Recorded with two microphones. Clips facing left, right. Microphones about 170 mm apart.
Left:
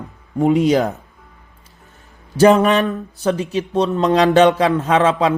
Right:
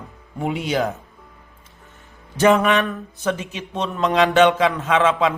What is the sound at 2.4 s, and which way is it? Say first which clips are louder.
A man's voice: left 4 dB; 35° left (ahead or behind).